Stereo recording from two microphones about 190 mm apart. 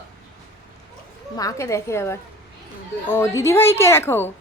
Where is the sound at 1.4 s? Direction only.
15° left (ahead or behind).